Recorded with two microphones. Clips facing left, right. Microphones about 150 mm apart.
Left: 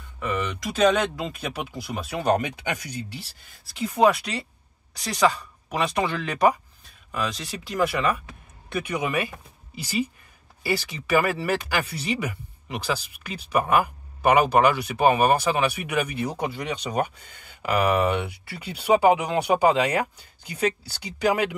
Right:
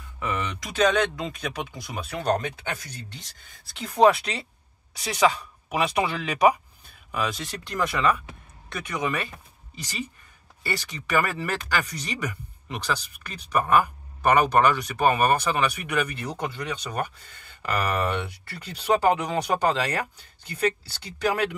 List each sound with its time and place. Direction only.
0.2 s speech: centre (ahead or behind)